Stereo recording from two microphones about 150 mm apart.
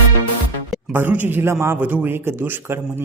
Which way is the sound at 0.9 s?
15° right (ahead or behind).